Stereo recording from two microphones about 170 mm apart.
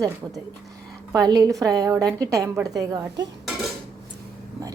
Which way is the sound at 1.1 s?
25° right (ahead or behind).